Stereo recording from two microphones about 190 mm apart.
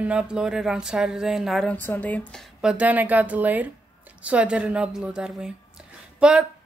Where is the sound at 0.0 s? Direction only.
5° right (ahead or behind).